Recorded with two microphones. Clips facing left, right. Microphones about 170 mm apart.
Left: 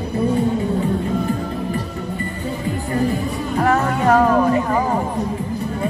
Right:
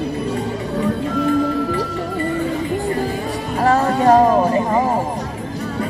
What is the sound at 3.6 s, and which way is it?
Music, 30° right (ahead or behind).